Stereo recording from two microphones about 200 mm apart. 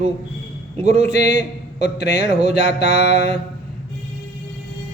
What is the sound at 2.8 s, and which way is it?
Mantra, 55° left (ahead or behind).